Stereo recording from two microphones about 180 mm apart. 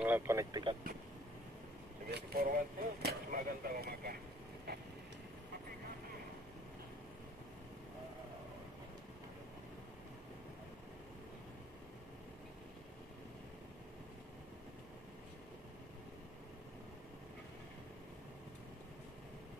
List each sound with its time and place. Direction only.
0.0 s speech: 10° right (ahead or behind)
2.0 s speech: 65° right (ahead or behind)